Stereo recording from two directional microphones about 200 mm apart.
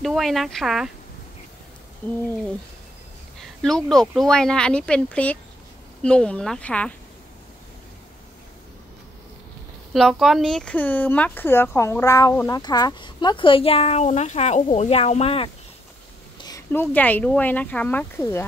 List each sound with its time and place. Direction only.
0.0 s speech: centre (ahead or behind)
2.0 s speech: 10° left (ahead or behind)
3.3 s speech: centre (ahead or behind)
9.9 s speech: centre (ahead or behind); by 15.5 s 30° left (ahead or behind)
16.3 s speech: 20° left (ahead or behind)